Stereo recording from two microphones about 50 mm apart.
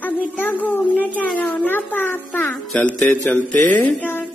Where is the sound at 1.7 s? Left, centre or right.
Left.